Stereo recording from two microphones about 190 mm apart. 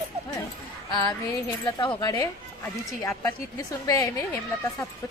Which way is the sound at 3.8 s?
20° left (ahead or behind).